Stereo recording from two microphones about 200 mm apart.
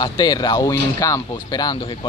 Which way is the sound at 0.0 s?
20° left (ahead or behind).